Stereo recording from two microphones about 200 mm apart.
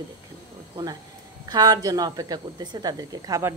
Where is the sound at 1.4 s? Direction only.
20° right (ahead or behind).